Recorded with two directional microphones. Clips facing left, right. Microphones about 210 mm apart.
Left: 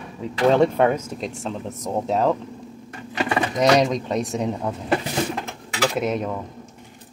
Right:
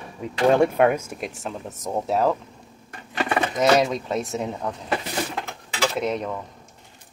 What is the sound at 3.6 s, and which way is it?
Speech, 5° right (ahead or behind).